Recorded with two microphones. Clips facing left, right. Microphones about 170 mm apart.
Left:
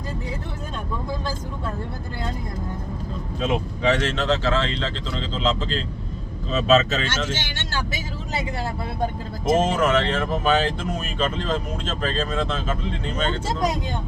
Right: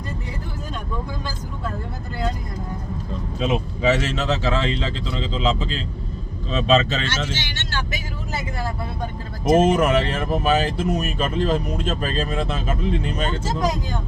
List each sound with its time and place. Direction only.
3.4 s speech: 5° right (ahead or behind)
7.3 s speech: 50° left (ahead or behind)
9.4 s speech: 5° right (ahead or behind)